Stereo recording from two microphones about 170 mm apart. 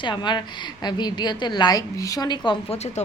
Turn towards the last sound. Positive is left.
turn(degrees=40)  # may be behind; listen again after turning